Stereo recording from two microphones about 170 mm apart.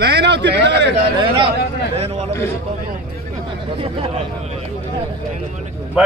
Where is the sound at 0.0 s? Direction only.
85° right.